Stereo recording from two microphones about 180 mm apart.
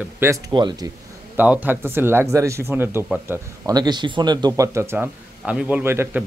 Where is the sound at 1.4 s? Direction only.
10° right (ahead or behind).